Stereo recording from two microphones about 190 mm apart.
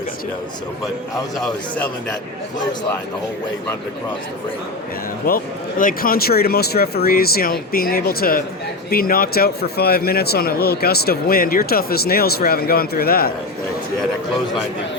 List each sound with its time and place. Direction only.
5.2 s speech: 45° left (ahead or behind)